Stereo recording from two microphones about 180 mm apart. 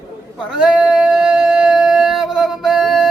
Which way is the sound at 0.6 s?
5° right (ahead or behind).